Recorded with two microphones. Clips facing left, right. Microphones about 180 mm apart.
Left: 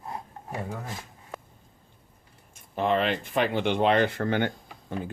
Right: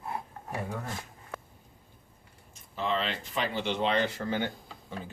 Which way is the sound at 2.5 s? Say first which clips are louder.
Left 6 dB; 55° left (ahead or behind).